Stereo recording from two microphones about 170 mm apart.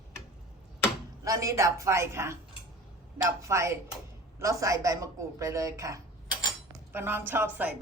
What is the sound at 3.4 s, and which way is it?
A woman's voice, 15° right (ahead or behind).